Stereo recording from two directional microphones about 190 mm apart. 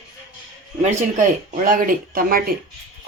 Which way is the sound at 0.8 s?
40° right (ahead or behind).